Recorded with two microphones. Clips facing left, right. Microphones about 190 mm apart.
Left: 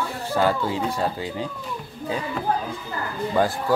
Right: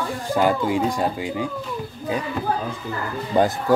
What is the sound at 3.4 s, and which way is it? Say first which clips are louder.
Speech: right 3 dB; 20° right (ahead or behind).